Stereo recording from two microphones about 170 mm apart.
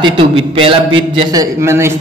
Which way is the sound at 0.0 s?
30° right (ahead or behind).